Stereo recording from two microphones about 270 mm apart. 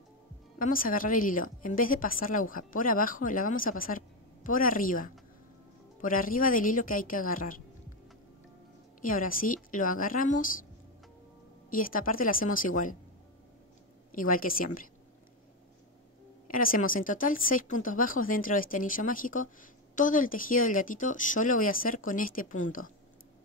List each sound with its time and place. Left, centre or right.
0.6 s a woman's voice: left
9.0 s speech: left
11.7 s speech: left
14.1 s speech: left
16.4 s speech: left